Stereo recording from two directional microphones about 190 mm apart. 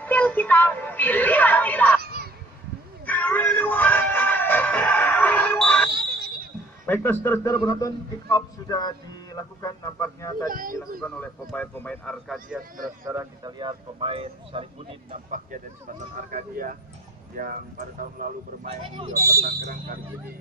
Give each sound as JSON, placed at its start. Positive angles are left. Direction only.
{"t": 0.0, "sound": "music", "side_deg": 10}
{"t": 2.0, "sound": "a sound", "side_deg": -55}
{"t": 3.1, "sound": "music", "side_deg": 10}
{"t": 5.9, "sound": "basketball bounce", "side_deg": -55}
{"t": 6.9, "sound": "a man's voice", "side_deg": 10}
{"t": 10.4, "sound": "speech", "side_deg": -45}
{"t": 11.0, "sound": "a man's voice", "side_deg": 5}
{"t": 13.0, "sound": "speech", "side_deg": -15}
{"t": 16.3, "sound": "speech", "side_deg": -45}
{"t": 19.1, "sound": "speech", "side_deg": -15}
{"t": 19.4, "sound": "speech", "side_deg": -45}